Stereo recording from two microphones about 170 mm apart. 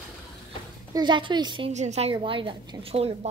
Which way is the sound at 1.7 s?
40° right (ahead or behind).